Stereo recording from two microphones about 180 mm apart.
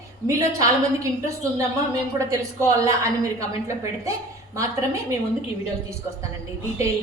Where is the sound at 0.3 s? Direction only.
20° right (ahead or behind).